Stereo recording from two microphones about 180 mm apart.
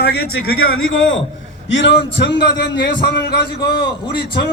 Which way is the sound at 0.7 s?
90° left.